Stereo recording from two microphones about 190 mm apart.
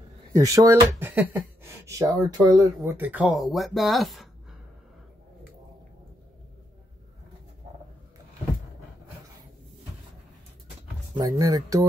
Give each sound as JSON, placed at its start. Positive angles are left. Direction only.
{"t": 0.4, "sound": "speech", "side_deg": -15}
{"t": 11.1, "sound": "speech", "side_deg": -20}